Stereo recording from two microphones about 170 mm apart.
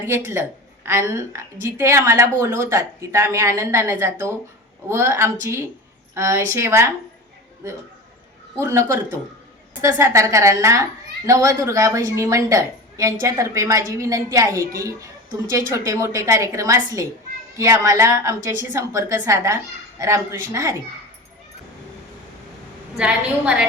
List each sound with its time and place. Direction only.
0.0 s a woman's voice: 15° right (ahead or behind)
8.6 s a woman's voice: 15° right (ahead or behind)
23.0 s a woman's voice: 5° right (ahead or behind)